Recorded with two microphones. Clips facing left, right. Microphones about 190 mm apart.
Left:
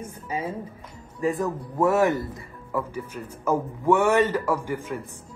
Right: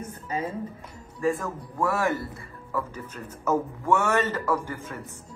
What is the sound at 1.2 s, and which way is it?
Speech, 20° left (ahead or behind).